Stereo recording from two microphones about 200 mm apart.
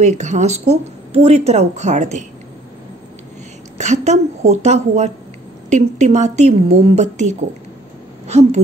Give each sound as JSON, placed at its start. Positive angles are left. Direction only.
{"t": 0.0, "sound": "speech", "side_deg": -35}
{"t": 3.7, "sound": "a woman's voice", "side_deg": -35}